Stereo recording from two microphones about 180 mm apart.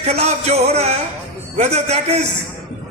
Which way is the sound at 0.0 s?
35° right (ahead or behind).